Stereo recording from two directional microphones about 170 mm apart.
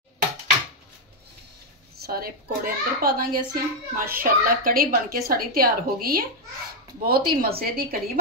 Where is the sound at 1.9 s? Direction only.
65° right (ahead or behind).